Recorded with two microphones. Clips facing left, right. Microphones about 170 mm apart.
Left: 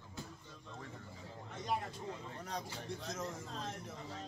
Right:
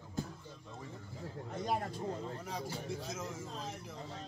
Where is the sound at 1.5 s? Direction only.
40° right (ahead or behind).